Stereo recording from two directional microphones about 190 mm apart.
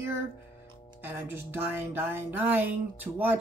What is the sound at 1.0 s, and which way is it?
Speech, 10° right (ahead or behind).